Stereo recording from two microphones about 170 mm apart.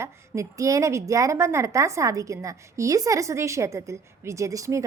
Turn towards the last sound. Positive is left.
turn(degrees=-20)  # may be behind; listen again after turning